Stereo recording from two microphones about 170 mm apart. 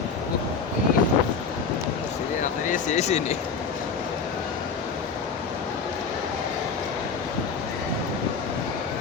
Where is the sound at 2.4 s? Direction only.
50° left (ahead or behind).